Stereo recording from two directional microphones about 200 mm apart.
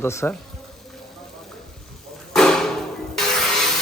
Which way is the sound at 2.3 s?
Centre (ahead or behind).